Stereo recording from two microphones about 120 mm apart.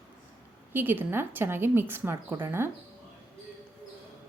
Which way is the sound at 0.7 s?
15° right (ahead or behind).